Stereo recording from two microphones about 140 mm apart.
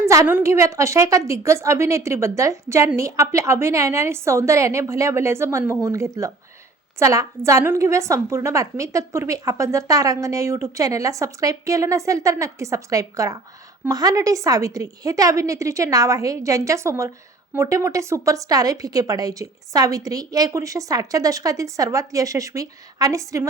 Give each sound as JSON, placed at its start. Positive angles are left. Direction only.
{"t": 0.0, "sound": "a woman's voice", "side_deg": -20}